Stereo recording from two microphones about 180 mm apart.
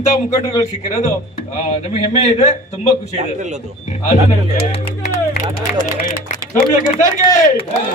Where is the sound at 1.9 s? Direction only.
40° left (ahead or behind).